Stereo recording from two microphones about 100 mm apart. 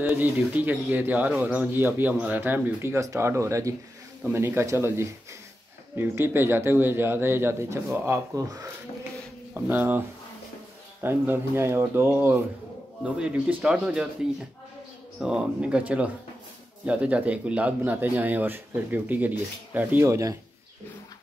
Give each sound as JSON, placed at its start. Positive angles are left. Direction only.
{"t": 0.0, "sound": "speech", "side_deg": -15}
{"t": 9.5, "sound": "speech", "side_deg": -20}
{"t": 13.0, "sound": "speech", "side_deg": -15}
{"t": 15.1, "sound": "speech", "side_deg": -10}
{"t": 20.1, "sound": "a man's voice", "side_deg": -35}